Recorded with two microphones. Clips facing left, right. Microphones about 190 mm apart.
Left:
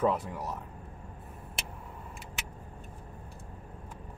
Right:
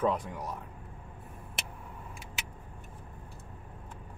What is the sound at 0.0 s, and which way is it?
Speech, 5° left (ahead or behind).